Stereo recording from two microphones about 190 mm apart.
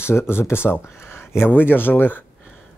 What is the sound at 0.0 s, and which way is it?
Speech, 15° left (ahead or behind).